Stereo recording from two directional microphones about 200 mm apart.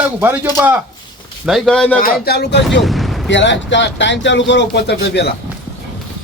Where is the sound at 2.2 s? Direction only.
55° left (ahead or behind).